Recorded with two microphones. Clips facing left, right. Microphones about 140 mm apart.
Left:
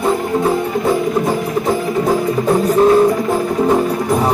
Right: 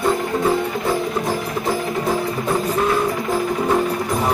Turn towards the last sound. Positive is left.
turn(degrees=35)  # may be behind; listen again after turning